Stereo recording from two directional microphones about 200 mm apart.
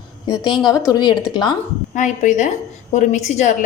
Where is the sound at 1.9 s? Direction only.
40° left (ahead or behind).